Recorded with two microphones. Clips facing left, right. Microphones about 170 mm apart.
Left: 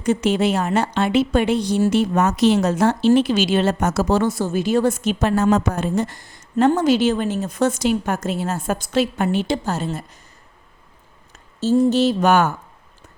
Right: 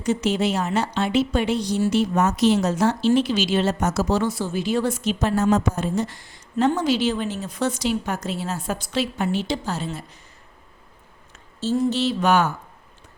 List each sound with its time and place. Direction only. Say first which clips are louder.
0.0 s speech: left 3 dB; 55° left (ahead or behind)
11.6 s speech: left 6 dB; 45° left (ahead or behind)